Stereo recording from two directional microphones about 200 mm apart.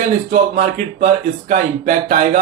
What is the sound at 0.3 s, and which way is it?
Speech, 40° right (ahead or behind).